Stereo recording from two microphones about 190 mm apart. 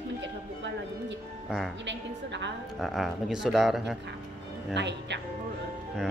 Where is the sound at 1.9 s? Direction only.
70° right (ahead or behind).